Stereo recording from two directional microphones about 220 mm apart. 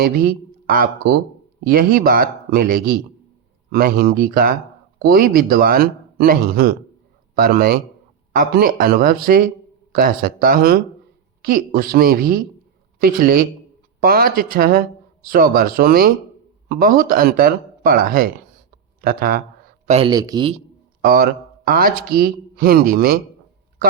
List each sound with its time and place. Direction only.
0.0 s speech: 40° right (ahead or behind)
19.9 s speech: 25° right (ahead or behind)
21.0 s speech: 40° right (ahead or behind)